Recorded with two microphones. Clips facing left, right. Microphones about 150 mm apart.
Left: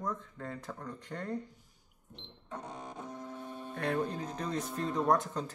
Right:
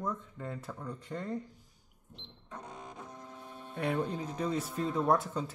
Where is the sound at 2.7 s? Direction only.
35° left (ahead or behind).